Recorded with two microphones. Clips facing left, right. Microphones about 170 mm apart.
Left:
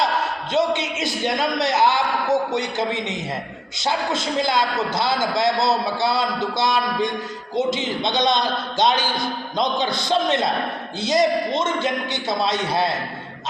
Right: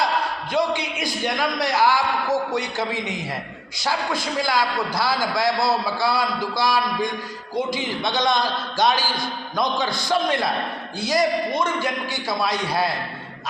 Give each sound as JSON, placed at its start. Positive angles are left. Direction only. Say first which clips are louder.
{"t": 0.5, "sound": "a man's voice", "louder": "left 2 dB", "side_deg": 20}